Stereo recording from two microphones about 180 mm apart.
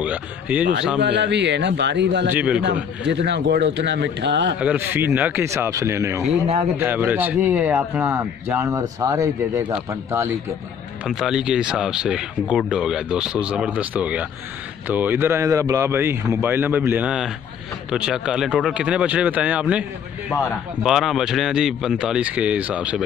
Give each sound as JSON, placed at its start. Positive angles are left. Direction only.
{"t": 0.0, "sound": "speech", "side_deg": -10}
{"t": 1.0, "sound": "a man's voice", "side_deg": -75}
{"t": 2.3, "sound": "speech", "side_deg": -5}
{"t": 2.6, "sound": "a man's voice", "side_deg": -75}
{"t": 4.6, "sound": "speech", "side_deg": -10}
{"t": 11.1, "sound": "speech", "side_deg": 0}
{"t": 20.8, "sound": "speech", "side_deg": 0}